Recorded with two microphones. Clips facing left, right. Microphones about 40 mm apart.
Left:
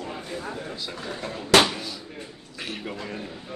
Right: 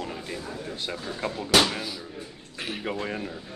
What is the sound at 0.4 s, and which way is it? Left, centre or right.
Speech, left.